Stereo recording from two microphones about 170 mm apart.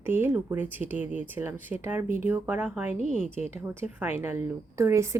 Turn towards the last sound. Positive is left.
turn(degrees=-15)  # may be behind; listen again after turning